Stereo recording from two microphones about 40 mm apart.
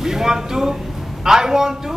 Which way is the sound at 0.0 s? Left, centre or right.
Centre.